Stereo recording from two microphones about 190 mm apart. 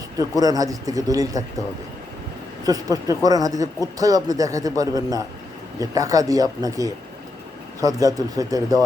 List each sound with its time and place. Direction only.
0.2 s speech: 20° right (ahead or behind)
2.6 s speech: 20° right (ahead or behind)